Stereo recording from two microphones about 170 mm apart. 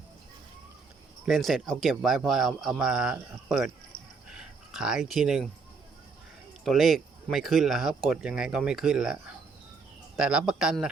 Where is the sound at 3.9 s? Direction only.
55° left (ahead or behind).